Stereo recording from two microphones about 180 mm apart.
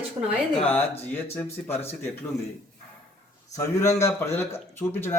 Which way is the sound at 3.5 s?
15° left (ahead or behind).